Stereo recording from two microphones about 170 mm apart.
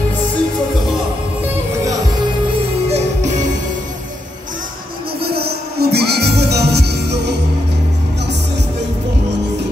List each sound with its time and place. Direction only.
2.9 s music: 45° right (ahead or behind)
5.2 s music: 65° right (ahead or behind)